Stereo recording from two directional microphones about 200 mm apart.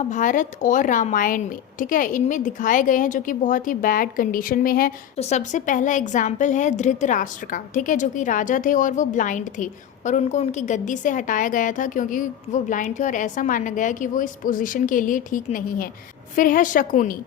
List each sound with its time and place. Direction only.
0.1 s a woman's voice: 40° left (ahead or behind)
5.1 s a woman's voice: 35° left (ahead or behind)